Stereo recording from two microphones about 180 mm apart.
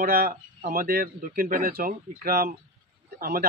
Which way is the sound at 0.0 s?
55° right (ahead or behind).